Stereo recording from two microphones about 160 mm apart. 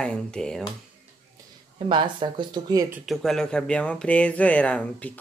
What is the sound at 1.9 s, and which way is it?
Speech, 30° right (ahead or behind).